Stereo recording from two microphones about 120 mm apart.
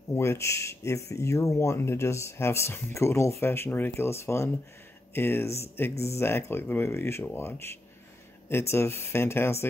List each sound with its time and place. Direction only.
0.1 s speech: 20° left (ahead or behind)